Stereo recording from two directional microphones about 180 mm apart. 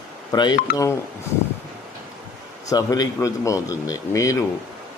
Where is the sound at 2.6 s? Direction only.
20° left (ahead or behind).